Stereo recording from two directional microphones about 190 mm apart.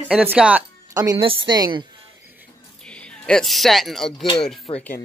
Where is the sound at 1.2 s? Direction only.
25° right (ahead or behind).